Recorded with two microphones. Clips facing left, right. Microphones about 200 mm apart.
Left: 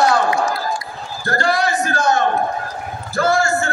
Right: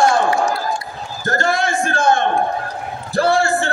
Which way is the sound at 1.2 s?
20° right (ahead or behind).